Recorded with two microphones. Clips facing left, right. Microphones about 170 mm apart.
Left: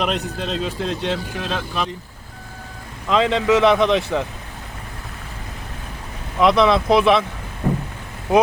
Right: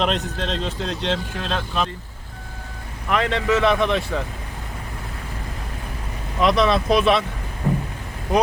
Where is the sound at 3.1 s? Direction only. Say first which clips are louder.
Left 4 dB; 15° left (ahead or behind).